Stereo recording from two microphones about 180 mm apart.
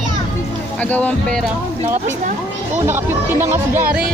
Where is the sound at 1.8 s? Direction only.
45° right (ahead or behind).